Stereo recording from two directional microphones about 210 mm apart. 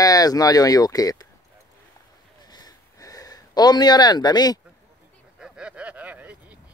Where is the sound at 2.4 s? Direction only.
20° left (ahead or behind).